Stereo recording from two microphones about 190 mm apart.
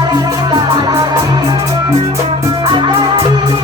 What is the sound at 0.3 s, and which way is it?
Music, 20° right (ahead or behind).